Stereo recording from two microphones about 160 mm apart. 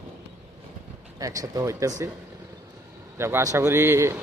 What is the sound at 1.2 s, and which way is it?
Speech, 20° right (ahead or behind).